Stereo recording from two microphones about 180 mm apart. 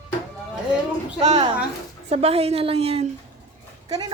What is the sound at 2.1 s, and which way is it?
Speech, 35° right (ahead or behind).